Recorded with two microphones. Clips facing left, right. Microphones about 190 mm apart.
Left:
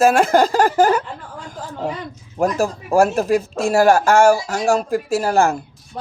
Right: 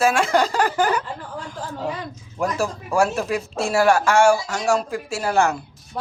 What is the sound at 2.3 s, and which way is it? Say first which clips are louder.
Speech: left 5 dB; 40° left (ahead or behind).